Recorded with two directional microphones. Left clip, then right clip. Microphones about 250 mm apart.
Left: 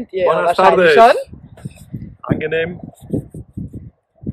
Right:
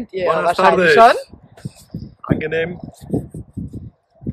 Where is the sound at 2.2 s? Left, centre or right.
Centre.